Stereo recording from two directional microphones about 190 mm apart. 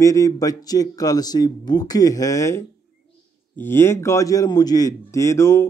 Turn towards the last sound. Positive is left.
turn(degrees=15)  # may be behind; listen again after turning